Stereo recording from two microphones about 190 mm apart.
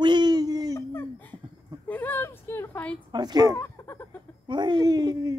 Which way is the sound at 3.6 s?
15° left (ahead or behind).